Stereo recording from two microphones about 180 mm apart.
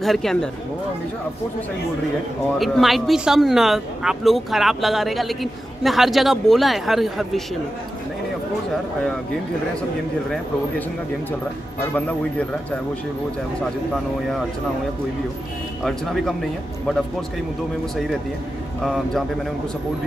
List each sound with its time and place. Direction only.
0.0 s speech: centre (ahead or behind)
2.6 s speech: centre (ahead or behind)
11.9 s a man's voice: 5° left (ahead or behind)
15.8 s speech: centre (ahead or behind)
18.9 s speech: centre (ahead or behind)